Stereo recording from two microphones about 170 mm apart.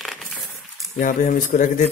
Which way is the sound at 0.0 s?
Centre (ahead or behind).